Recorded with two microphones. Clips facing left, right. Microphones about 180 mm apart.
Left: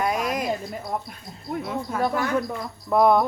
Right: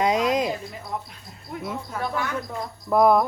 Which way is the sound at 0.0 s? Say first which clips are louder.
Right 3 dB; 20° right (ahead or behind).